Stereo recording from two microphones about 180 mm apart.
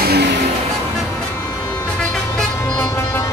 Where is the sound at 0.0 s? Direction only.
60° right (ahead or behind).